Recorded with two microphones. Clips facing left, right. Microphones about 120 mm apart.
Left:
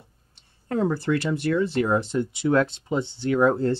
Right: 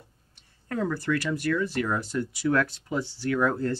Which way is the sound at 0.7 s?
25° left (ahead or behind).